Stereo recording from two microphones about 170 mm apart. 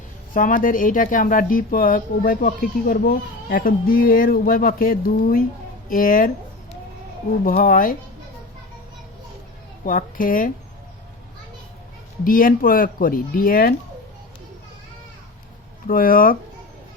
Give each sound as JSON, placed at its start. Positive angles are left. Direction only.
{"t": 0.3, "sound": "a woman's voice", "side_deg": 50}
{"t": 7.4, "sound": "a woman's voice", "side_deg": 55}
{"t": 9.8, "sound": "a woman's voice", "side_deg": 55}
{"t": 12.2, "sound": "speech", "side_deg": 55}
{"t": 15.9, "sound": "speech", "side_deg": 55}